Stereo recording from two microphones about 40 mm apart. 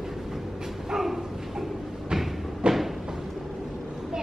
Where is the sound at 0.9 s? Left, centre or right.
Centre.